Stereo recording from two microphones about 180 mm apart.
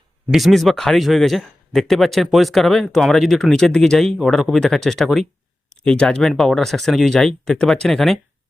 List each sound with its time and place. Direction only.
0.3 s speech: centre (ahead or behind)